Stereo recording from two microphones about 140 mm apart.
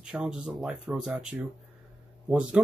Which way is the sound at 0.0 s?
5° right (ahead or behind).